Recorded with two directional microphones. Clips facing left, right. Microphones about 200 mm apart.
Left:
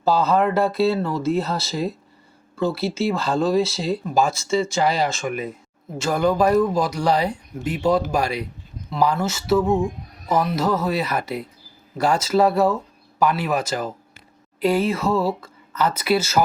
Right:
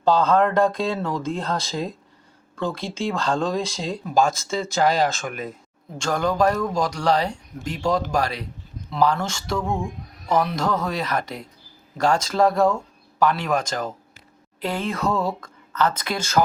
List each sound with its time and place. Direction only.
0.0 s speech: 5° left (ahead or behind)